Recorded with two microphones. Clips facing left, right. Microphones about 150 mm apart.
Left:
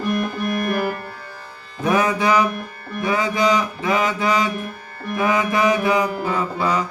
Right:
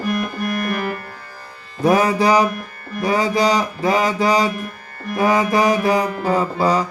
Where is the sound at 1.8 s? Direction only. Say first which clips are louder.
Right 3 dB; 35° right (ahead or behind).